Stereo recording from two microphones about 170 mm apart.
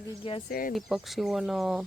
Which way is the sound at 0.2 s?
30° left (ahead or behind).